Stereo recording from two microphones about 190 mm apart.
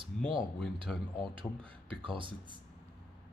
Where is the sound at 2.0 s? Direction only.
25° right (ahead or behind).